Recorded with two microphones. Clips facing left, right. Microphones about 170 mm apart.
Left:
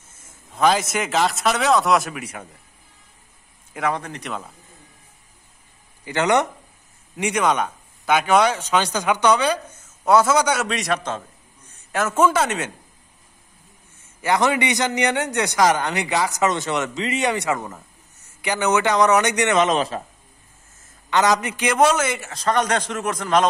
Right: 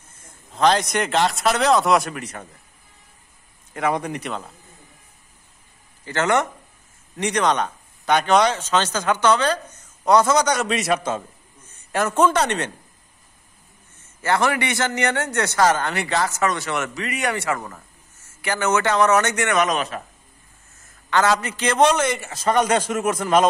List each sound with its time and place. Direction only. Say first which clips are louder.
0.6 s speech: right 1 dB; 5° left (ahead or behind)
3.9 s speech: right 4 dB; 15° right (ahead or behind)
4.2 s speech: right 1 dB; 5° right (ahead or behind)
6.0 s speech: left 1 dB; 15° left (ahead or behind); by 11.2 s 10° right (ahead or behind)
11.9 s speech: even; 5° left (ahead or behind)
14.2 s speech: left 1 dB; 15° left (ahead or behind)
21.1 s speech: left 1 dB; 15° left (ahead or behind)
22.3 s speech: right 2 dB; 5° right (ahead or behind)